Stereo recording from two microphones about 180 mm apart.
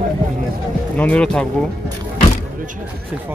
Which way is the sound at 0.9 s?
5° left (ahead or behind).